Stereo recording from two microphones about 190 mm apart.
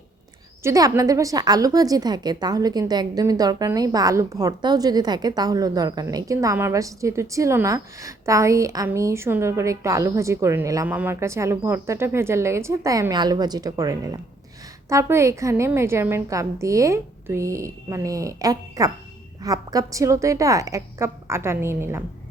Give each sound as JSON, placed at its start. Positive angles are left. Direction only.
{"t": 0.6, "sound": "a woman's voice", "side_deg": -15}